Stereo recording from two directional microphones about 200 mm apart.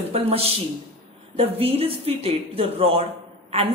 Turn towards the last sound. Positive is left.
turn(degrees=-30)  # may be behind; listen again after turning